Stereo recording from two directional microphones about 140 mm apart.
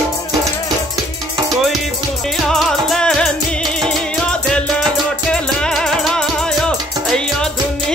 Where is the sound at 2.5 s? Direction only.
Centre (ahead or behind).